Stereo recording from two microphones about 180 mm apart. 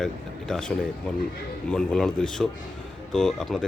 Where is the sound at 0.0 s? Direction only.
5° left (ahead or behind).